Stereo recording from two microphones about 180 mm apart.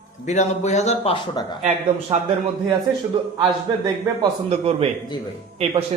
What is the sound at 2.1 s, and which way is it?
Speech, 25° right (ahead or behind).